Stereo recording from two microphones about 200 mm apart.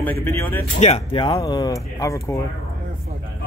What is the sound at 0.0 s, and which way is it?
Speech, 10° left (ahead or behind).